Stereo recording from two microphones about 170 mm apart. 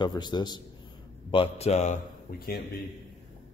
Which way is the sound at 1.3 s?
35° left (ahead or behind).